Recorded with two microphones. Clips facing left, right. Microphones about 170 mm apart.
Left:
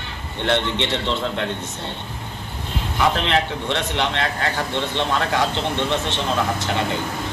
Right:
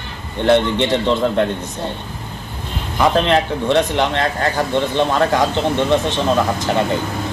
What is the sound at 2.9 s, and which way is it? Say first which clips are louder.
A man's voice: right 5 dB; 45° right (ahead or behind).